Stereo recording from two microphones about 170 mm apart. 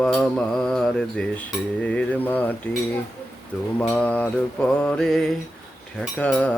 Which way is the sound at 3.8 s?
10° left (ahead or behind).